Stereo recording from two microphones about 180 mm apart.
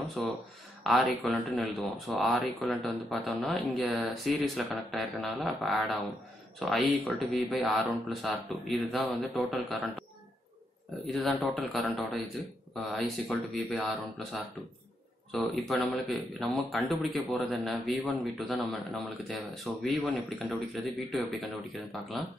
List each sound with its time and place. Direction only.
0.2 s speech: centre (ahead or behind)
11.1 s speech: centre (ahead or behind)